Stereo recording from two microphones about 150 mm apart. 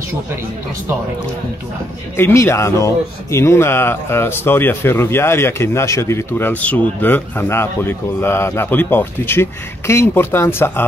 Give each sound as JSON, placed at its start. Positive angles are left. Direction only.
{"t": 2.1, "sound": "speech", "side_deg": 15}